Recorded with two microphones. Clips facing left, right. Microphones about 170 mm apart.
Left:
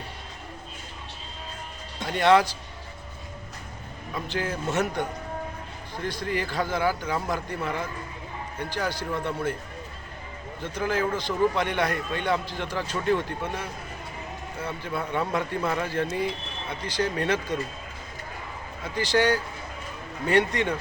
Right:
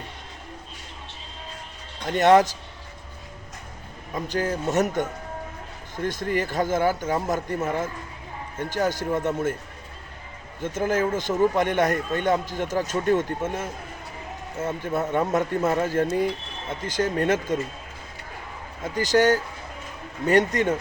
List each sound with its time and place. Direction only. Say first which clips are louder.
2.0 s speech: right 3 dB; 45° right (ahead or behind)
4.1 s speech: right 4 dB; 40° right (ahead or behind)
10.6 s speech: right 3 dB; 45° right (ahead or behind)
18.9 s speech: right 3 dB; 45° right (ahead or behind)